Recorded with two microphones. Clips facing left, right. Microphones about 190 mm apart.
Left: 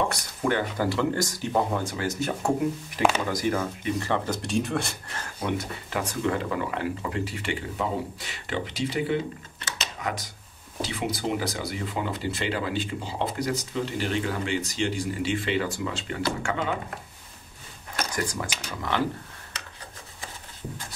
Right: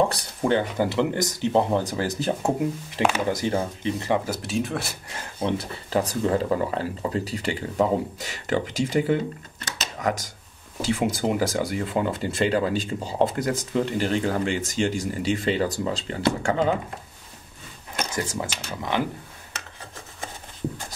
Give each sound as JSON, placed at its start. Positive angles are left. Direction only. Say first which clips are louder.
{"t": 0.1, "sound": "speech", "louder": "right 4 dB", "side_deg": -25}
{"t": 4.1, "sound": "speech", "louder": "right 3 dB", "side_deg": -5}
{"t": 5.4, "sound": "speech", "louder": "right 3 dB", "side_deg": -35}
{"t": 18.1, "sound": "speech", "louder": "right 2 dB", "side_deg": -25}